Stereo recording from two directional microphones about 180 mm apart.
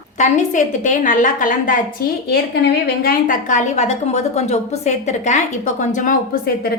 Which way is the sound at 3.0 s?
45° left (ahead or behind).